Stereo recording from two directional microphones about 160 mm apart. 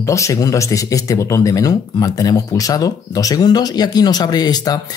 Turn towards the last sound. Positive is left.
turn(degrees=25)  # may be behind; listen again after turning